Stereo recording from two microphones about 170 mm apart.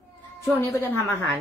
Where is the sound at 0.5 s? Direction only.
15° left (ahead or behind).